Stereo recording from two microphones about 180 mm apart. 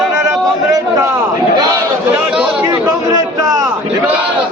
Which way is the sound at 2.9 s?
20° right (ahead or behind).